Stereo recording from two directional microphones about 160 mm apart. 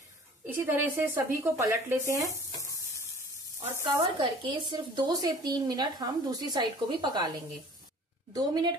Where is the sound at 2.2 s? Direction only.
20° left (ahead or behind).